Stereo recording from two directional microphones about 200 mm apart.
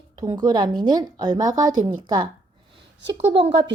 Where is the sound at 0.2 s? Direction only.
20° right (ahead or behind).